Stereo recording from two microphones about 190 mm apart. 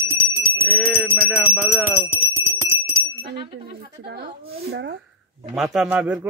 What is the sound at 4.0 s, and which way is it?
A child's voice, 60° right (ahead or behind).